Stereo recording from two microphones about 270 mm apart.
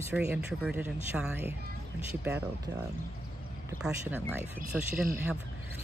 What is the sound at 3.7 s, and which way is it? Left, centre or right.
Speech, centre.